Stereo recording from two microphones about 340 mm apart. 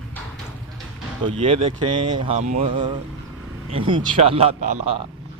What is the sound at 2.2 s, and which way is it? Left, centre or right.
Speech, centre.